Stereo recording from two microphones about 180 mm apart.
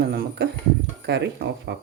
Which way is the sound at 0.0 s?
65° right (ahead or behind).